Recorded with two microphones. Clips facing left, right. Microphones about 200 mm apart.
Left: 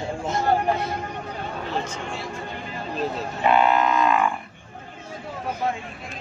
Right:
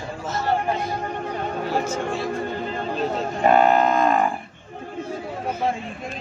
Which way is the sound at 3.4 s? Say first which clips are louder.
Right 3 dB; 45° right (ahead or behind).